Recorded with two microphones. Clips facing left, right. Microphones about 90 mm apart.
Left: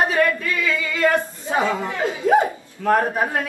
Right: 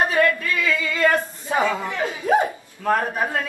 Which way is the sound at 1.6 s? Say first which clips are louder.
Left 1 dB; 20° left (ahead or behind).